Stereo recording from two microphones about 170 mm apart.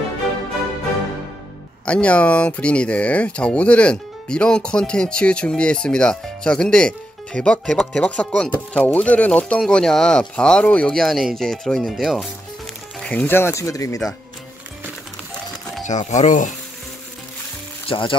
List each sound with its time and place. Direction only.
1.9 s speech: 5° left (ahead or behind)
15.8 s speech: 45° left (ahead or behind)
17.8 s speech: 30° left (ahead or behind)